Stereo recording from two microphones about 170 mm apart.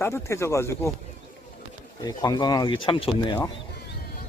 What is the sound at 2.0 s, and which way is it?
Speech, 25° left (ahead or behind).